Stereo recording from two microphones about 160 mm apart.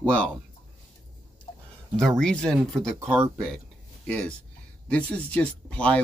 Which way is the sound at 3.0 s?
15° right (ahead or behind).